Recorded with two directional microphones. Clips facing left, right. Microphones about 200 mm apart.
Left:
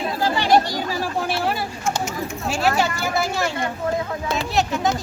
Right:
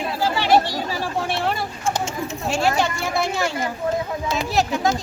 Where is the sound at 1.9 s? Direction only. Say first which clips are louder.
Right 1 dB; 25° right (ahead or behind).